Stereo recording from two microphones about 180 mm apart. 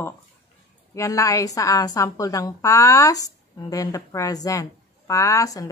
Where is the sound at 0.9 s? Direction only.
20° left (ahead or behind).